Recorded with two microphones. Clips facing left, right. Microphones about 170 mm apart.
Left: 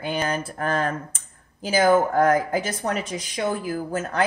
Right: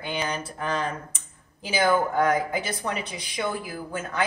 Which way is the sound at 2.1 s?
45° left (ahead or behind).